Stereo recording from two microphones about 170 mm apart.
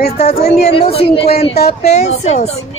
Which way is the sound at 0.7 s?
35° left (ahead or behind).